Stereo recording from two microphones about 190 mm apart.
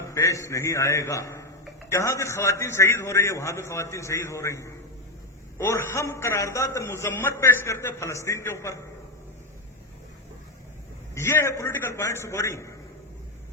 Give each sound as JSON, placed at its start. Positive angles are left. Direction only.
{"t": 0.0, "sound": "a man's voice", "side_deg": 15}
{"t": 11.1, "sound": "a man's voice", "side_deg": 15}